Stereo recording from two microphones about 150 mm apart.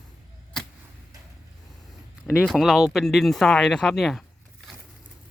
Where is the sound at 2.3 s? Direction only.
5° right (ahead or behind).